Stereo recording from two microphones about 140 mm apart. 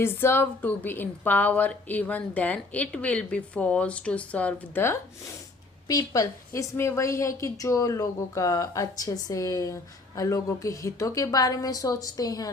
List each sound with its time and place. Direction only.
0.0 s a woman's voice: 15° left (ahead or behind)